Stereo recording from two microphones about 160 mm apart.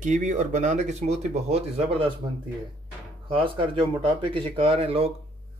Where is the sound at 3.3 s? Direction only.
35° right (ahead or behind).